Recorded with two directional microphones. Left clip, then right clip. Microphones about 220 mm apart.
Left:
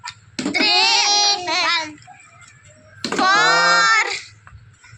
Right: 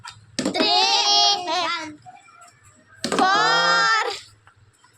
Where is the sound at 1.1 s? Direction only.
20° right (ahead or behind).